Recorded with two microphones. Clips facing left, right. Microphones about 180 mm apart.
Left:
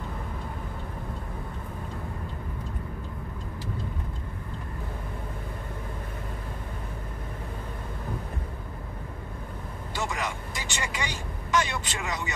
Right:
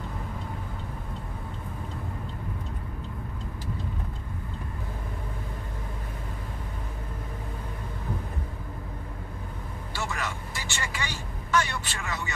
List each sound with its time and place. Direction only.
9.9 s vehicle: 15° left (ahead or behind)